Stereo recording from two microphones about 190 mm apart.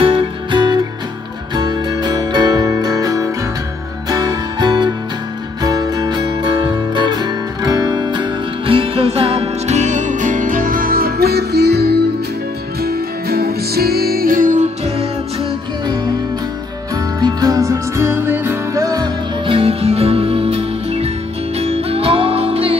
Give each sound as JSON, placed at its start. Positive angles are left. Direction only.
{"t": 0.0, "sound": "music", "side_deg": -30}
{"t": 16.9, "sound": "music", "side_deg": -20}